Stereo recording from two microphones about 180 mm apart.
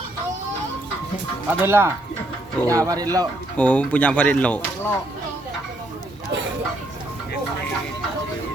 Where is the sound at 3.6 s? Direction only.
10° left (ahead or behind).